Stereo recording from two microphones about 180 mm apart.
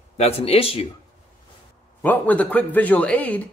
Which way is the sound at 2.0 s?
10° left (ahead or behind).